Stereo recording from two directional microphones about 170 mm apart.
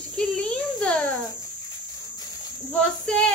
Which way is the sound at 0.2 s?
5° left (ahead or behind).